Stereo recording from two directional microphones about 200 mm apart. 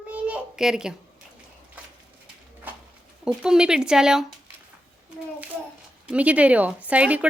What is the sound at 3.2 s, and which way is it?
Speech, 5° right (ahead or behind).